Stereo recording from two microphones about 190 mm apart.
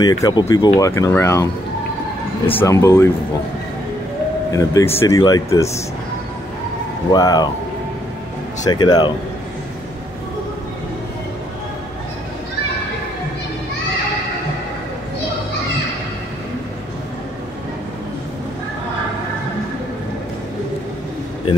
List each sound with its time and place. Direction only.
0.0 s speech: 20° left (ahead or behind)
2.6 s speech: 15° left (ahead or behind)
4.7 s speech: 15° left (ahead or behind)
7.1 s speech: 20° left (ahead or behind)
8.6 s speech: 20° left (ahead or behind)